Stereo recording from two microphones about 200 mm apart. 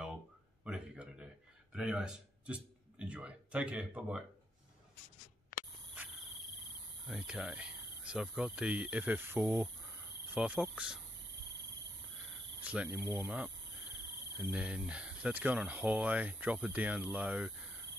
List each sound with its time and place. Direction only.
0.7 s a sound: 5° right (ahead or behind)
7.1 s speech: 5° right (ahead or behind)
12.6 s speech: 5° right (ahead or behind)
14.5 s speech: 5° right (ahead or behind)